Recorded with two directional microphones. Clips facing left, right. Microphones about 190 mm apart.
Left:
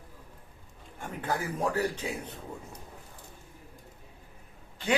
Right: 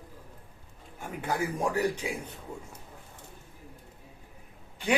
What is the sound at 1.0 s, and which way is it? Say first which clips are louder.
A man's voice: right 1 dB; 10° right (ahead or behind).